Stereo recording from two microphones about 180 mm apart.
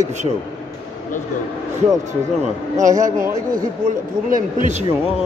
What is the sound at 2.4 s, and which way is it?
Speech, 45° right (ahead or behind).